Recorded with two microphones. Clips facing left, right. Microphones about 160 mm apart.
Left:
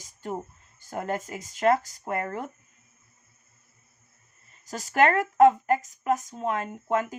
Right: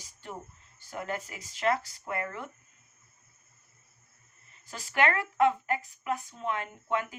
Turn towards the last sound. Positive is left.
turn(degrees=40)  # may be behind; listen again after turning